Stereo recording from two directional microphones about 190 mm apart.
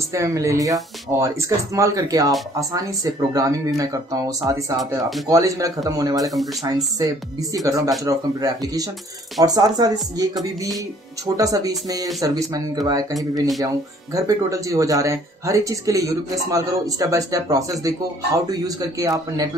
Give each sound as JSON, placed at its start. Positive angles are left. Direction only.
{"t": 0.1, "sound": "speech", "side_deg": -15}
{"t": 5.3, "sound": "speech", "side_deg": -15}
{"t": 7.5, "sound": "speech", "side_deg": -15}
{"t": 11.3, "sound": "speech", "side_deg": -20}